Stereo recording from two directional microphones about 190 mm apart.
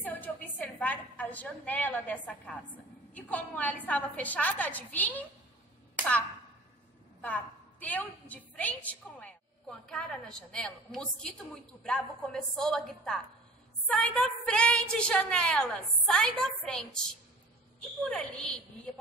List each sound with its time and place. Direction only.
0.0 s a woman's voice: 10° left (ahead or behind)
5.9 s a sound: 5° left (ahead or behind)
7.2 s a woman's voice: 5° left (ahead or behind)
18.0 s a woman's voice: 5° left (ahead or behind)